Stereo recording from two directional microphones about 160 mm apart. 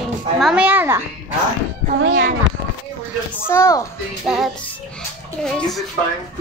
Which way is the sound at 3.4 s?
15° left (ahead or behind).